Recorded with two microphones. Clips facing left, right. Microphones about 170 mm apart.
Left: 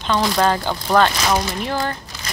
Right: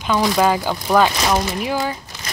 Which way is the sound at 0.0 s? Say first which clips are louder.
Right 1 dB; 10° right (ahead or behind).